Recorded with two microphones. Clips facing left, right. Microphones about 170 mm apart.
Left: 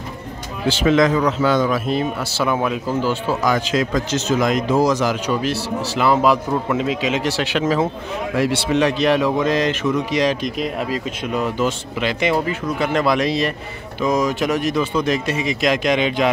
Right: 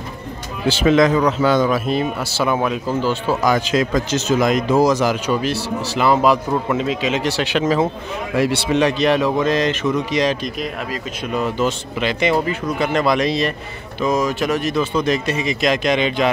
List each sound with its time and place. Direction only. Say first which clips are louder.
0.7 s speech: right 1 dB; 10° right (ahead or behind)
1.0 s a man's voice: right 1 dB; 35° right (ahead or behind)
1.7 s a man's voice: right 1 dB; 5° right (ahead or behind)
3.5 s a man's voice: right 2 dB; 15° right (ahead or behind); by 10.5 s 10° left (ahead or behind)
10.6 s speech: left 3 dB; 30° left (ahead or behind)
11.3 s a man's voice: right 1 dB; 10° left (ahead or behind)